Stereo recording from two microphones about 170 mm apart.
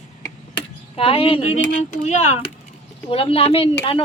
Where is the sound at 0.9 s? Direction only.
30° left (ahead or behind).